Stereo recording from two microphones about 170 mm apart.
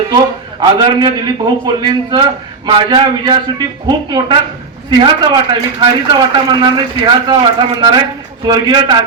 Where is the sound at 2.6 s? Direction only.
25° right (ahead or behind).